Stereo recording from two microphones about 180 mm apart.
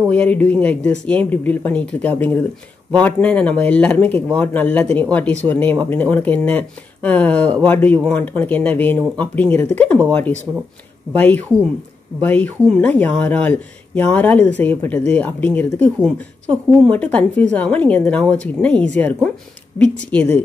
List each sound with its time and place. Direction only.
0.1 s speech: 10° left (ahead or behind)
11.1 s speech: 10° left (ahead or behind)